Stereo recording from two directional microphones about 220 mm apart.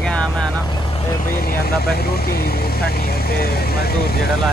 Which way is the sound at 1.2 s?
40° left (ahead or behind).